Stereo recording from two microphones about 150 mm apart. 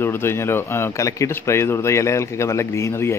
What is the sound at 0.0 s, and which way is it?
Speech, 15° left (ahead or behind).